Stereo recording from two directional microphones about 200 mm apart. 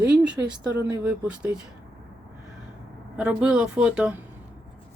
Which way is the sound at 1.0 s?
5° right (ahead or behind).